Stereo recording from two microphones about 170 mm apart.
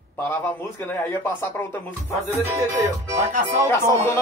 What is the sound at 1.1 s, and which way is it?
Speech, 15° left (ahead or behind).